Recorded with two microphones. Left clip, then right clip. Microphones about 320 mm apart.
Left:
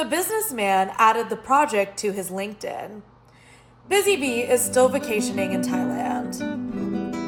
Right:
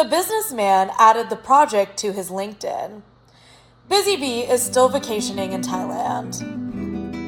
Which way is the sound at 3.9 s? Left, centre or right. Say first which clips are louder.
Right 1 dB; centre.